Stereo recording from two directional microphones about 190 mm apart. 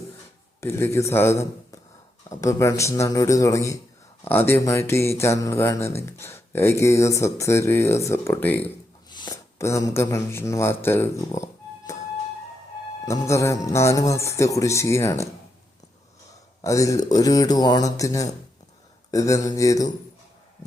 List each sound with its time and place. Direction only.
0.6 s a man's voice: 15° left (ahead or behind)
9.0 s speech: 20° left (ahead or behind)
13.1 s speech: 15° left (ahead or behind)
16.6 s speech: 15° left (ahead or behind)